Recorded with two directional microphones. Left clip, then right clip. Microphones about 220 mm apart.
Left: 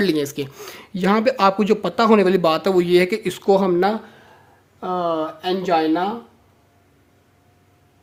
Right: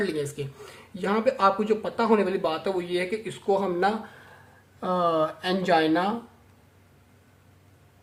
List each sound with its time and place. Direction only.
0.0 s speech: 40° left (ahead or behind)
4.8 s speech: 10° left (ahead or behind)